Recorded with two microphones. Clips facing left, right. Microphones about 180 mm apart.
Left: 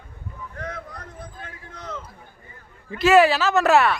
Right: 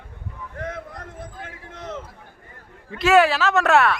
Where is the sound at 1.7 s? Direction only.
25° right (ahead or behind).